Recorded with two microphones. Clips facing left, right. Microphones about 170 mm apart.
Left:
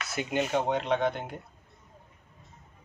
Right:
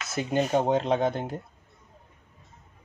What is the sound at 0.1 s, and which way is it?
Speech, 35° right (ahead or behind).